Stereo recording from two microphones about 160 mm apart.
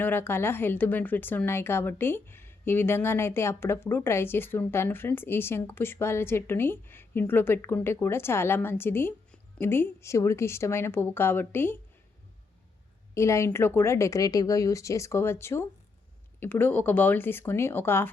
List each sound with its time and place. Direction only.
0.0 s speech: 15° left (ahead or behind)
13.1 s speech: 20° left (ahead or behind)